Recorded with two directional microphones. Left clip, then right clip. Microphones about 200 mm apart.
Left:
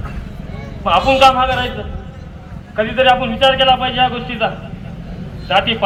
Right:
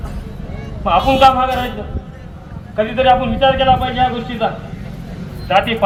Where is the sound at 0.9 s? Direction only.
5° right (ahead or behind).